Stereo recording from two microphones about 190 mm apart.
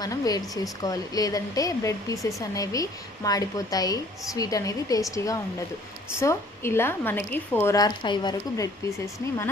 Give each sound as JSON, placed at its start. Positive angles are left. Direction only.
{"t": 0.0, "sound": "a woman's voice", "side_deg": 20}